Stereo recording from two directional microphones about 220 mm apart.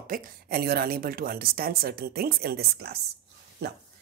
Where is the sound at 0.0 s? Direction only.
40° right (ahead or behind).